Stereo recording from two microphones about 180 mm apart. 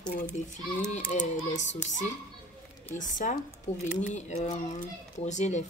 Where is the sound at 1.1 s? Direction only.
40° left (ahead or behind).